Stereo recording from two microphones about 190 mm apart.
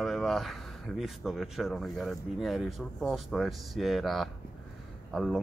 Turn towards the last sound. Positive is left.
turn(degrees=0)  # may be behind; listen again after turning